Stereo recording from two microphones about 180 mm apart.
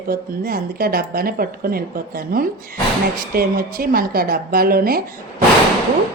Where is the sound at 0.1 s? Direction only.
55° right (ahead or behind).